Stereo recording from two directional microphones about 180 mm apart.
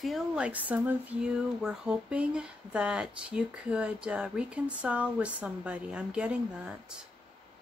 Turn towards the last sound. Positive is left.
turn(degrees=-5)  # may be behind; listen again after turning